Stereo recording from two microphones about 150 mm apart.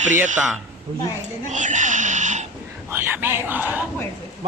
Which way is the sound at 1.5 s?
55° right (ahead or behind).